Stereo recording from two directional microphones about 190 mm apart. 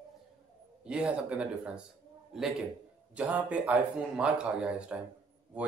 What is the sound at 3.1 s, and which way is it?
Speech, 5° right (ahead or behind).